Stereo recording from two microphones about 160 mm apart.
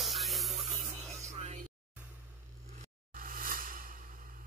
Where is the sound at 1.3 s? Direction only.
50° right (ahead or behind).